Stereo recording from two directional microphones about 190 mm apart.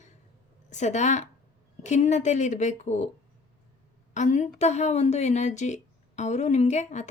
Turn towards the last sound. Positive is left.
turn(degrees=35)  # may be behind; listen again after turning